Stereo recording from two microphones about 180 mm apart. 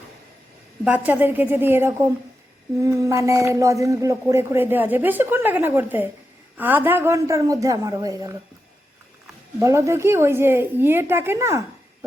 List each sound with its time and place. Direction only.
0.9 s speech: 10° right (ahead or behind)
9.6 s speech: 15° right (ahead or behind)